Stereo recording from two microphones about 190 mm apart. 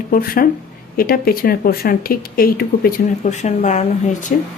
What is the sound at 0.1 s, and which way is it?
Speech, 50° left (ahead or behind).